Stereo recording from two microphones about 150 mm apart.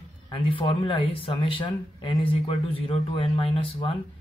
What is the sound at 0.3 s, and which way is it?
Speech, 35° left (ahead or behind).